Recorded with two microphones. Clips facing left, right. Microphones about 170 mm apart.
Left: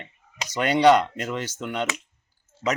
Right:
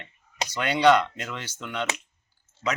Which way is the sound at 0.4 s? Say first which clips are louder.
Left 3 dB; 45° left (ahead or behind).